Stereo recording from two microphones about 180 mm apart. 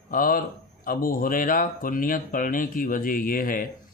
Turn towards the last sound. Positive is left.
turn(degrees=50)  # may be behind; listen again after turning